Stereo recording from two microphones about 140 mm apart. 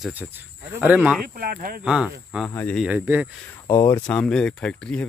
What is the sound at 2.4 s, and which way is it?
Speech, 10° left (ahead or behind).